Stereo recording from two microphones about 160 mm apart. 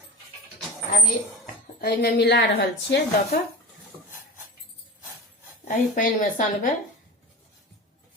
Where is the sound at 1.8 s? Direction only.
90° left.